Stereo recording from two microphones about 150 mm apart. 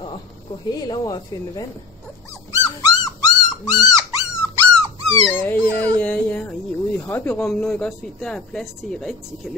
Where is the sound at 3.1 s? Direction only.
25° left (ahead or behind).